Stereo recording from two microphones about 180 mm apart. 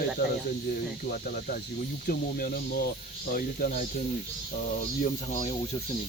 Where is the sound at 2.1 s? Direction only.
55° left (ahead or behind).